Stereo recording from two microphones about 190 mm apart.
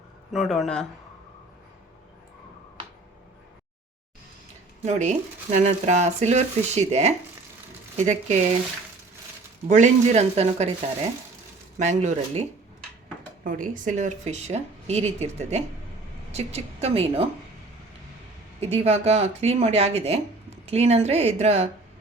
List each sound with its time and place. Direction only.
0.3 s speech: centre (ahead or behind)
4.9 s speech: 40° right (ahead or behind)
9.6 s speech: 40° right (ahead or behind)
11.8 s speech: 40° right (ahead or behind)
18.6 s speech: 35° right (ahead or behind)